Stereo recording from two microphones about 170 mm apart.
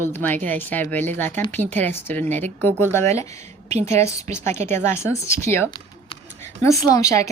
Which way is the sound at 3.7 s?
40° right (ahead or behind).